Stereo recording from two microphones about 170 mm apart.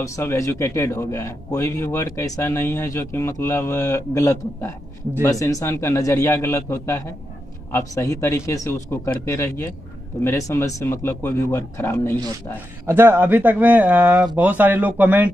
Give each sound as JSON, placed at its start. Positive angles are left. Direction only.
{"t": 0.0, "sound": "a man's voice", "side_deg": 15}
{"t": 12.8, "sound": "speech", "side_deg": -15}